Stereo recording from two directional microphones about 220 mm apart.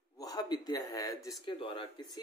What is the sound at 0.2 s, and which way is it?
Speech, 20° left (ahead or behind).